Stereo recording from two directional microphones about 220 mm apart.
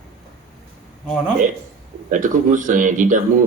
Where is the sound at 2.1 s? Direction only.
35° right (ahead or behind).